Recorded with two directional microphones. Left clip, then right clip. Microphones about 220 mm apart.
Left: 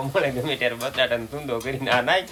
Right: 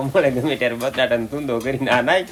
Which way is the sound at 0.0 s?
Centre (ahead or behind).